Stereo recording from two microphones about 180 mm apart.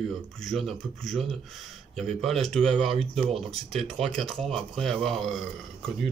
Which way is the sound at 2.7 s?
30° right (ahead or behind).